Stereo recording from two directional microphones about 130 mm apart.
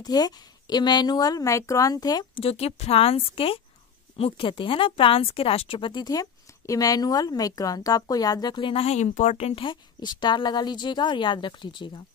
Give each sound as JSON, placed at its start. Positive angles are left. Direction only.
{"t": 0.0, "sound": "a woman's voice", "side_deg": 30}
{"t": 2.3, "sound": "a woman's voice", "side_deg": 50}
{"t": 9.6, "sound": "speech", "side_deg": 35}